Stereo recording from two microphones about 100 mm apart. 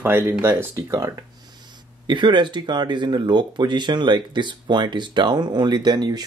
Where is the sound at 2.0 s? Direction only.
50° right (ahead or behind).